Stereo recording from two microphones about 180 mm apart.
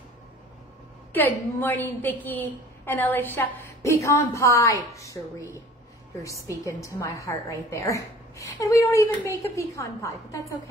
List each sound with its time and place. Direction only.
1.1 s a woman's voice: 10° left (ahead or behind)
6.2 s a woman's voice: 15° left (ahead or behind)